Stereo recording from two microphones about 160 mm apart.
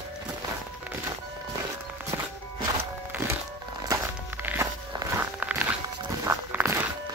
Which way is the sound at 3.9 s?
15° right (ahead or behind).